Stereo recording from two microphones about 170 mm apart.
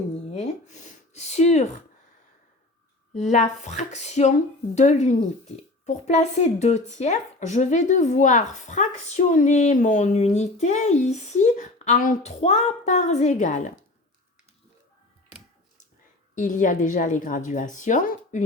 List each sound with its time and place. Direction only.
0.3 s speech: 40° left (ahead or behind)
3.1 s speech: 45° left (ahead or behind)
16.3 s speech: 50° left (ahead or behind)